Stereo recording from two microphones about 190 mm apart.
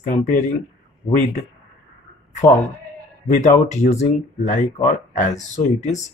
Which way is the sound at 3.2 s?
40° left (ahead or behind).